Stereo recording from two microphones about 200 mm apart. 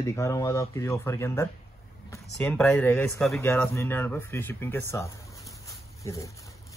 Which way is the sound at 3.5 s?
10° left (ahead or behind).